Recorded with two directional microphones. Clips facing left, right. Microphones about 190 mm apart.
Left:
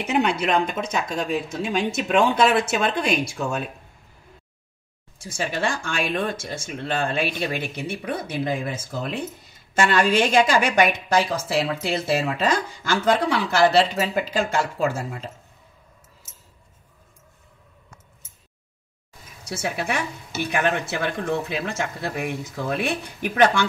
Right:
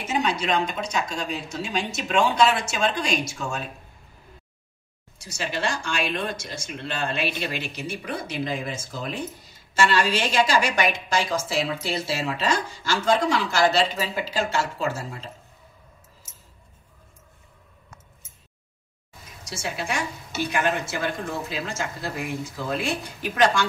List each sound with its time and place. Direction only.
0.0 s a woman's voice: 60° left (ahead or behind)
5.2 s speech: 50° left (ahead or behind)
9.8 s a woman's voice: 55° left (ahead or behind)
19.4 s a woman's voice: 60° left (ahead or behind)